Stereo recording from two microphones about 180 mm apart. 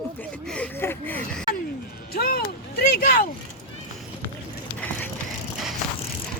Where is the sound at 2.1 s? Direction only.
60° left (ahead or behind).